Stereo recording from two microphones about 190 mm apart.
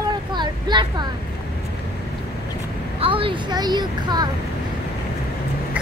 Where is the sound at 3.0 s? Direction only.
30° right (ahead or behind).